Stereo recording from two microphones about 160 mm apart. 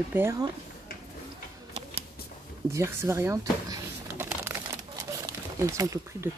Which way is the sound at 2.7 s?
15° right (ahead or behind).